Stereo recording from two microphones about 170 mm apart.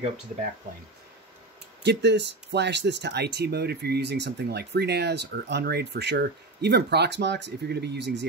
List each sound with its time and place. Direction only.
1.8 s speech: 90° right